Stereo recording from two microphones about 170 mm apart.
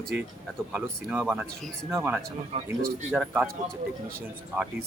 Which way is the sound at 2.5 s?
40° right (ahead or behind).